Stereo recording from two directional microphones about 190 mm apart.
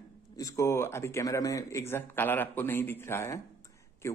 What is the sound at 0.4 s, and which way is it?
A man's voice, 15° left (ahead or behind).